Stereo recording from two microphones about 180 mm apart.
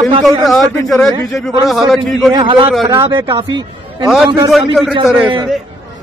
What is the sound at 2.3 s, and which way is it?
Speech, 25° right (ahead or behind).